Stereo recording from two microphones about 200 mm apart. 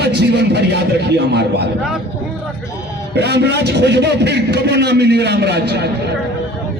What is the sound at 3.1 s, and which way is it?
A man's voice, 55° right (ahead or behind).